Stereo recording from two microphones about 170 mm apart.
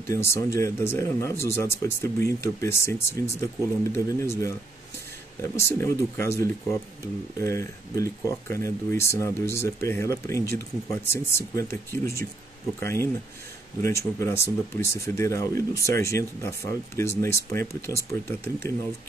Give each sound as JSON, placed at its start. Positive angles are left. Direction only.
{"t": 0.1, "sound": "speech", "side_deg": 15}
{"t": 12.8, "sound": "speech", "side_deg": 15}